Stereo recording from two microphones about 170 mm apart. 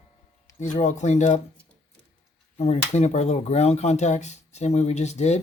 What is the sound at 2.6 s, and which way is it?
Speech, 40° left (ahead or behind).